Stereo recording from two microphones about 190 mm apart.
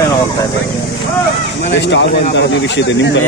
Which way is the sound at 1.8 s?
70° left (ahead or behind).